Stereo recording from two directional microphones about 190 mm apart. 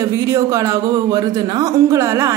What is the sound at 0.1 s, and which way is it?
A woman's voice, 15° right (ahead or behind).